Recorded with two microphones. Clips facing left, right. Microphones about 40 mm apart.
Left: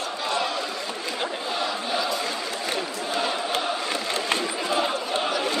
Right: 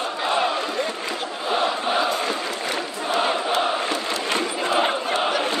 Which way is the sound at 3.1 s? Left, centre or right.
Right.